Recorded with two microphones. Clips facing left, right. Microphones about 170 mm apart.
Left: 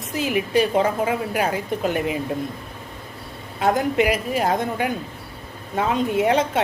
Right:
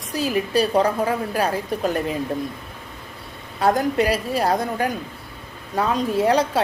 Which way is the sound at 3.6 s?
20° left (ahead or behind).